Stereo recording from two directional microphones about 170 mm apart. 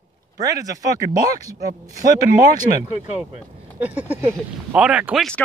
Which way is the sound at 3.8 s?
10° right (ahead or behind).